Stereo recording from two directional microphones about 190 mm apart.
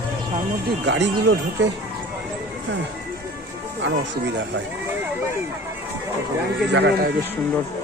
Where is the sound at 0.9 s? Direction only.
65° right (ahead or behind).